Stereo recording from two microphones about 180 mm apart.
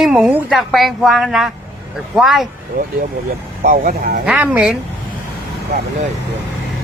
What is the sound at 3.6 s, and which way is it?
Speech, 50° right (ahead or behind).